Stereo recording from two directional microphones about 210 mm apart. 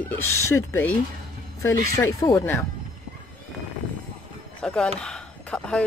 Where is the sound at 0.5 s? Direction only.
10° left (ahead or behind).